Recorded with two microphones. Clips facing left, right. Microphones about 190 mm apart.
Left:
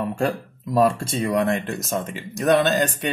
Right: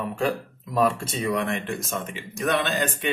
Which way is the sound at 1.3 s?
40° left (ahead or behind).